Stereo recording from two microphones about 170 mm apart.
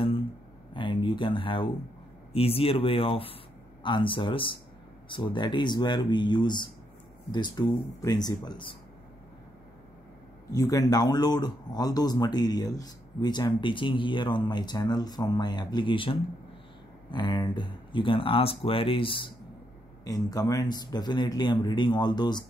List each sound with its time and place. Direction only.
0.7 s a sound: 30° left (ahead or behind)
2.3 s speech: 35° left (ahead or behind)
10.5 s speech: 20° left (ahead or behind)